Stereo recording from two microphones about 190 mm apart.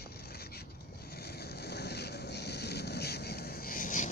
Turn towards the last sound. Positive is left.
turn(degrees=45)  # may be behind; listen again after turning